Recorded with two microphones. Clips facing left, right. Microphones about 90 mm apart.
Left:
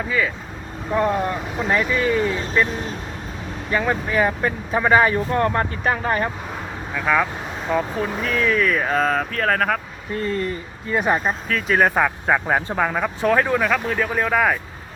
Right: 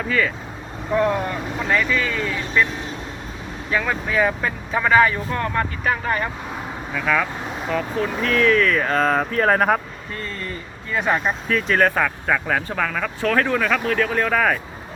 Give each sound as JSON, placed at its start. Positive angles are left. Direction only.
{"t": 0.1, "sound": "speech", "side_deg": 10}
{"t": 1.7, "sound": "speech", "side_deg": 20}
{"t": 3.7, "sound": "speech", "side_deg": 10}
{"t": 4.8, "sound": "speech", "side_deg": 30}
{"t": 6.9, "sound": "speech", "side_deg": 15}
{"t": 8.0, "sound": "speech", "side_deg": 10}
{"t": 9.1, "sound": "speech", "side_deg": -15}
{"t": 10.9, "sound": "speech", "side_deg": 10}
{"t": 11.2, "sound": "speech", "side_deg": 0}
{"t": 11.8, "sound": "speech", "side_deg": 15}